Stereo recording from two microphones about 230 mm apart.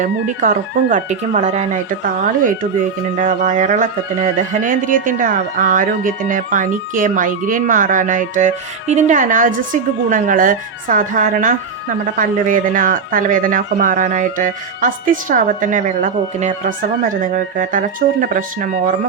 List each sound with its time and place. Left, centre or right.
0.0 s speech: right